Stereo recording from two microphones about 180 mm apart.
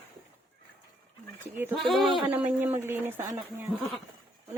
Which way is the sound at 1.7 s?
Centre (ahead or behind).